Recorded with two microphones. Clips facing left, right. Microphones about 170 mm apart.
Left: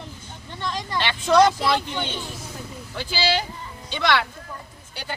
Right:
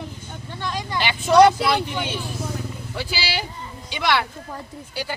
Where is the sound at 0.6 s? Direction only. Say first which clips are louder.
Right 1 dB; 10° right (ahead or behind).